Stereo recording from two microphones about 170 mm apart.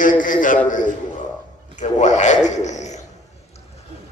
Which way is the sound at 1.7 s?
45° left (ahead or behind).